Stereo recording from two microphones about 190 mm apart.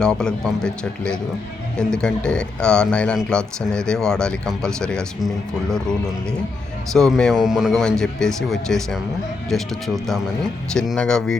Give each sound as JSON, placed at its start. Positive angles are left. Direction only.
{"t": 0.0, "sound": "speech", "side_deg": 5}
{"t": 6.9, "sound": "speech", "side_deg": 0}